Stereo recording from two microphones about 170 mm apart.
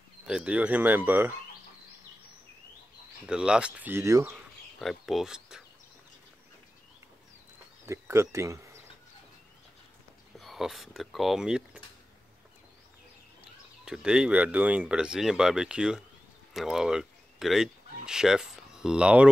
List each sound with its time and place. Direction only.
0.3 s speech: 5° right (ahead or behind)
3.3 s speech: 5° right (ahead or behind)
4.7 s speech: centre (ahead or behind)
7.8 s speech: 15° right (ahead or behind)
10.3 s speech: centre (ahead or behind)
13.8 s speech: 5° right (ahead or behind)